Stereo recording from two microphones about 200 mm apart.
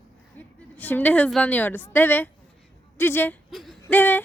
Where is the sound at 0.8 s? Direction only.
10° left (ahead or behind).